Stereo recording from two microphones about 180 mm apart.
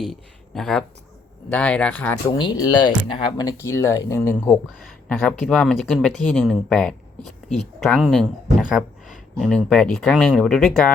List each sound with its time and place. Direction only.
0.0 s speech: centre (ahead or behind)
2.4 s speech: 25° left (ahead or behind)
4.4 s speech: 5° left (ahead or behind)